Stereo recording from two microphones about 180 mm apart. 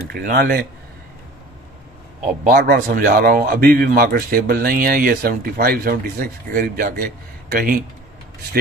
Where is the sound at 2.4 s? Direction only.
55° right (ahead or behind).